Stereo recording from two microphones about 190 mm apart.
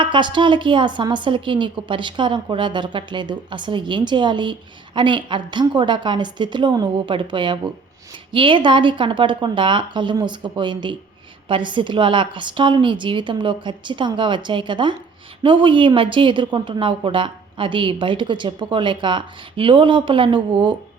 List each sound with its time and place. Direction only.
0.0 s a woman's voice: 25° right (ahead or behind)